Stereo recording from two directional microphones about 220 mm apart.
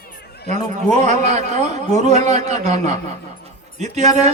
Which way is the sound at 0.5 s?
30° right (ahead or behind).